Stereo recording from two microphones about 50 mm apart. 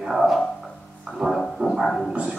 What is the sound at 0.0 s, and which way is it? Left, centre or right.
Speech, centre.